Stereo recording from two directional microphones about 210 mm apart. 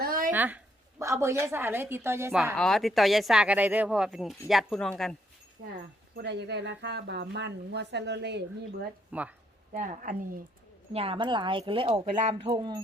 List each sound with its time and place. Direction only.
0.0 s a sound: 45° right (ahead or behind)
0.3 s speech: 10° right (ahead or behind)
2.6 s speech: centre (ahead or behind)
6.1 s speech: 55° right (ahead or behind)
9.1 s speech: 5° right (ahead or behind)
9.7 s a woman's voice: 35° right (ahead or behind)
10.9 s speech: 25° right (ahead or behind)